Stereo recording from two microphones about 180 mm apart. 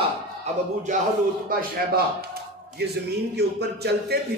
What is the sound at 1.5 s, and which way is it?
Speech, 55° right (ahead or behind).